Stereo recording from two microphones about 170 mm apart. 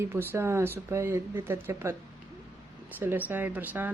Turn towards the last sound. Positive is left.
turn(degrees=-10)  # may be behind; listen again after turning